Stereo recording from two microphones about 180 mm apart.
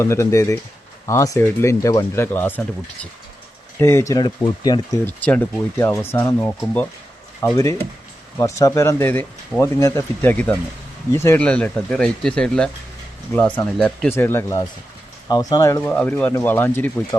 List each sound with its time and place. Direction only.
0.0 s speech: 15° left (ahead or behind)
3.8 s speech: 15° left (ahead or behind)
5.0 s speech: 10° left (ahead or behind)